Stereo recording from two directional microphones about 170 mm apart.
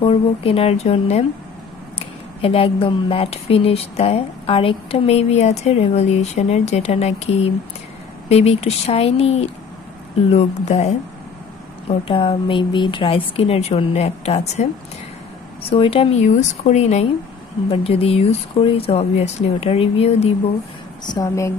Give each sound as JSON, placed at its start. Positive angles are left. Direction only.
{"t": 0.0, "sound": "speech", "side_deg": 35}
{"t": 2.4, "sound": "speech", "side_deg": 35}
{"t": 15.7, "sound": "speech", "side_deg": 35}
{"t": 21.1, "sound": "a woman's voice", "side_deg": 20}